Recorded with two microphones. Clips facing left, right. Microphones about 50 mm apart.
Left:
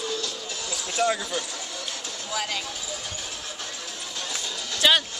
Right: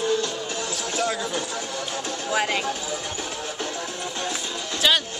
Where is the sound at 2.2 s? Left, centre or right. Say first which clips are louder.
Right 7 dB; right.